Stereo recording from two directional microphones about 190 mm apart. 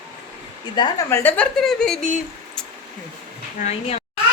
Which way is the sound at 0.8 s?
15° left (ahead or behind).